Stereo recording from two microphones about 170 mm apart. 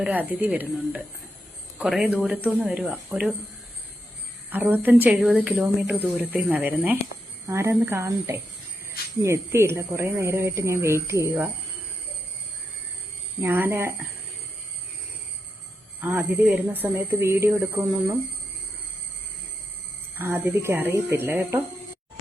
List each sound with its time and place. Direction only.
0.0 s speech: 10° right (ahead or behind)
4.4 s speech: 10° right (ahead or behind)
13.4 s speech: 15° right (ahead or behind)
16.0 s speech: 10° right (ahead or behind)
20.1 s speech: 15° right (ahead or behind)